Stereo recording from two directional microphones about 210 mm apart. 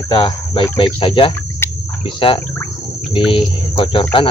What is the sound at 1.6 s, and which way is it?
Insect, 10° left (ahead or behind).